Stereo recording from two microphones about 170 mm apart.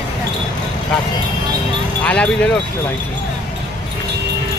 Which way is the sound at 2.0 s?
10° left (ahead or behind).